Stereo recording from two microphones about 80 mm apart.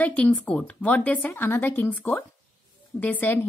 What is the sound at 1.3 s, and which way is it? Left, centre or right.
A woman's voice, left.